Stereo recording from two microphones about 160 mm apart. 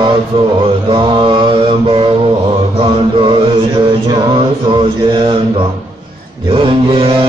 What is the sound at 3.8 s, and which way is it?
Music, 30° right (ahead or behind).